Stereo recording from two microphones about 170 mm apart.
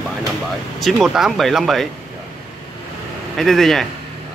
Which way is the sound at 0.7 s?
Centre (ahead or behind).